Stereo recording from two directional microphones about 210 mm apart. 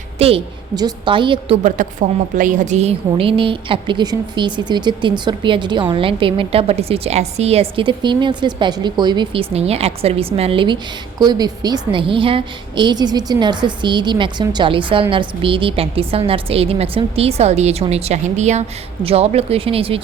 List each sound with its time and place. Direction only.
0.2 s a woman's voice: 25° right (ahead or behind)
1.6 s a woman's voice: 40° right (ahead or behind)